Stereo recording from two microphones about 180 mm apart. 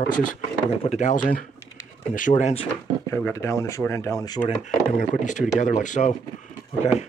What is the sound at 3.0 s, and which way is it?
Speech, 15° left (ahead or behind).